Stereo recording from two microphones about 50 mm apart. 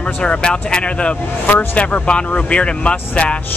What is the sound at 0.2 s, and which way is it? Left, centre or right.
Speech, centre.